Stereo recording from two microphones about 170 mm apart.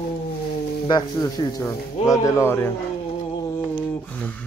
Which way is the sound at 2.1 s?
15° left (ahead or behind).